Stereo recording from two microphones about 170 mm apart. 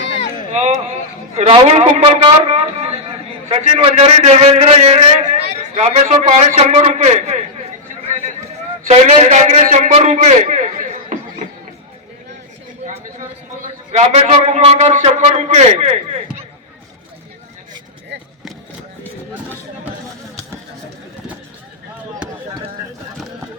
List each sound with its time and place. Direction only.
0.2 s a sound: 45° left (ahead or behind)
0.5 s a man's voice: 40° right (ahead or behind)
8.9 s a man's voice: 40° right (ahead or behind)
13.9 s a man's voice: 40° right (ahead or behind)